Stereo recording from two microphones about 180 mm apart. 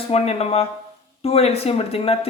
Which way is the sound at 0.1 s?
35° left (ahead or behind).